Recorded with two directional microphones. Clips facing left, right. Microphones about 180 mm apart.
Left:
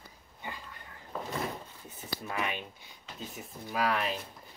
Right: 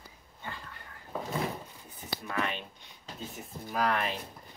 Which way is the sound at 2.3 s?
10° left (ahead or behind).